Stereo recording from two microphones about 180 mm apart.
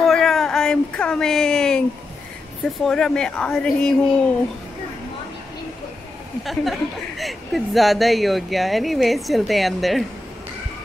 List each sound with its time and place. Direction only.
0.0 s a sound: centre (ahead or behind)
2.6 s a woman's voice: centre (ahead or behind)
6.4 s a woman's voice: centre (ahead or behind)